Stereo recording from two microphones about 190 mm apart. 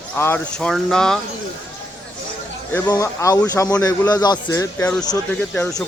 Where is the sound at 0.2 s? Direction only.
10° left (ahead or behind).